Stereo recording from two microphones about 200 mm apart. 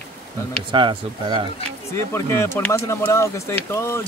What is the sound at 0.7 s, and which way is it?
Speech, 25° right (ahead or behind).